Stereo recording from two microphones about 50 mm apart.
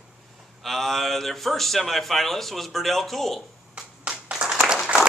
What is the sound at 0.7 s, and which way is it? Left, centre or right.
A man's voice, centre.